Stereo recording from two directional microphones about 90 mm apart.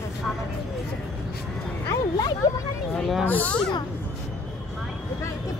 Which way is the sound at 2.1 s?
45° left (ahead or behind).